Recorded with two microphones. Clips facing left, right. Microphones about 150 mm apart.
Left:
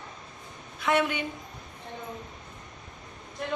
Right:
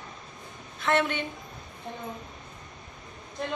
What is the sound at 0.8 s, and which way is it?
Speech, 10° left (ahead or behind).